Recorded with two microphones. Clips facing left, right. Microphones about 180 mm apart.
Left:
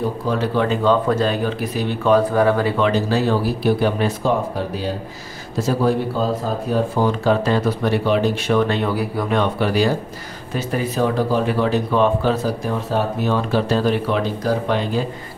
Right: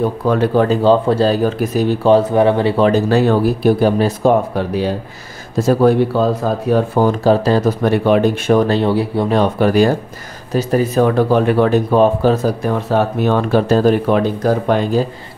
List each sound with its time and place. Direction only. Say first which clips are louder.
0.3 s speech: right 6 dB; 55° right (ahead or behind)
0.7 s speech: right 5 dB; 30° right (ahead or behind)
2.0 s speech: right 3 dB; 25° right (ahead or behind)
2.8 s speech: right 6 dB; 50° right (ahead or behind); by 4.9 s 70° right (ahead or behind)
5.6 s speech: right 7 dB; 55° right (ahead or behind)
7.0 s speech: right 4 dB; 40° right (ahead or behind)
11.1 s speech: right 6 dB; 60° right (ahead or behind); by 12.4 s 40° right (ahead or behind)
12.6 s speech: right 6 dB; 60° right (ahead or behind); by 15.0 s 45° right (ahead or behind)